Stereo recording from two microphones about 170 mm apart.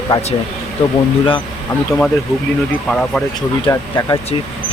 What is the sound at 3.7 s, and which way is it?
Speech, 20° left (ahead or behind).